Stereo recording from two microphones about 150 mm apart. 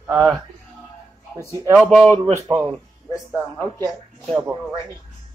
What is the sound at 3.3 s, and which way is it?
Speech, 15° left (ahead or behind).